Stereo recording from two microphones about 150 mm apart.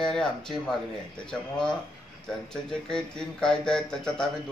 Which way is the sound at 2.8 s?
5° left (ahead or behind).